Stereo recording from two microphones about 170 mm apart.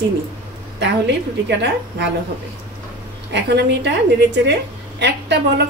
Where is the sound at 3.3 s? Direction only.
85° right.